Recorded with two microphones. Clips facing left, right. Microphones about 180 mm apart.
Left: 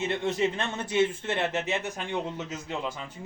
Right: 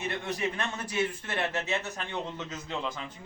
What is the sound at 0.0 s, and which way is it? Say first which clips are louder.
A man's voice: left 5 dB; 25° left (ahead or behind).